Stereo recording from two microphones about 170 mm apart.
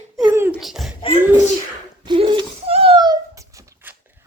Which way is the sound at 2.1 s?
30° right (ahead or behind).